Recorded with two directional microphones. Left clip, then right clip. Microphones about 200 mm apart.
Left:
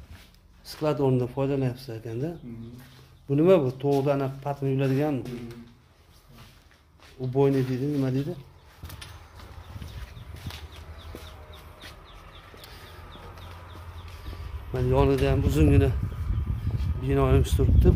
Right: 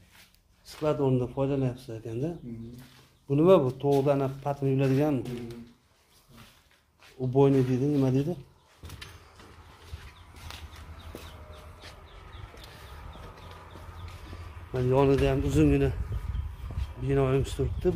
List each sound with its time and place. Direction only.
0.7 s speech: 25° left (ahead or behind); by 2.1 s 10° left (ahead or behind)
3.3 s speech: centre (ahead or behind)
7.2 s speech: 30° right (ahead or behind)
14.8 s speech: centre (ahead or behind)
17.0 s speech: 15° left (ahead or behind)